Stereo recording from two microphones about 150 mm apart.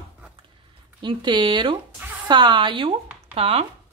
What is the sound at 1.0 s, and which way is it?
Speech, 30° right (ahead or behind).